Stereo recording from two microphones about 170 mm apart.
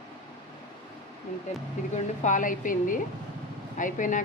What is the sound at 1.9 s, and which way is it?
A woman's voice, 45° left (ahead or behind).